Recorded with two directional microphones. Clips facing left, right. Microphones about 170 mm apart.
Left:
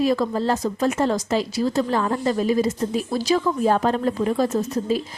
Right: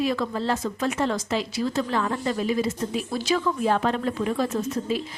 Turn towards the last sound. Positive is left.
turn(degrees=40)  # may be behind; listen again after turning